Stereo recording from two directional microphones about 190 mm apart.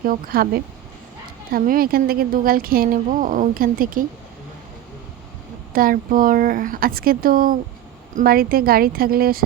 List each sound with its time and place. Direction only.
0.0 s a woman's voice: 50° right (ahead or behind)
5.7 s a woman's voice: 50° right (ahead or behind)